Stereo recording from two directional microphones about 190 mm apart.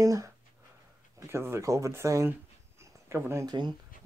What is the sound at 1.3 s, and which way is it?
Speech, 15° right (ahead or behind).